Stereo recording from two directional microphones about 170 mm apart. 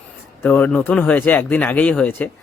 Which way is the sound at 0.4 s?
10° left (ahead or behind).